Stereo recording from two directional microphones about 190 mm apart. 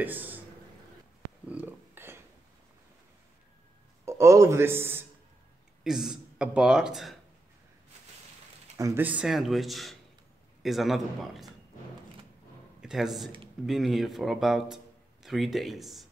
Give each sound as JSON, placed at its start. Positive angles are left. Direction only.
{"t": 0.0, "sound": "a man's voice", "side_deg": -10}
{"t": 1.5, "sound": "a sound", "side_deg": -10}
{"t": 4.0, "sound": "speech", "side_deg": -15}
{"t": 8.7, "sound": "speech", "side_deg": -15}
{"t": 12.8, "sound": "a man's voice", "side_deg": 0}